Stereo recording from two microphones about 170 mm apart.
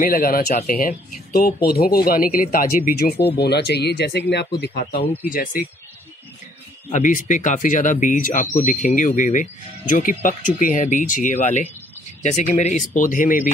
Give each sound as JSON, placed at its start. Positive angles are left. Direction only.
{"t": 0.0, "sound": "speech", "side_deg": 60}
{"t": 3.3, "sound": "speech", "side_deg": 75}
{"t": 5.3, "sound": "speech", "side_deg": 55}
{"t": 6.9, "sound": "speech", "side_deg": 50}